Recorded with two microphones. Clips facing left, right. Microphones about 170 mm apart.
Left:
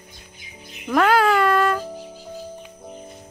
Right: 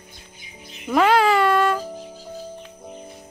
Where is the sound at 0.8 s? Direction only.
5° right (ahead or behind).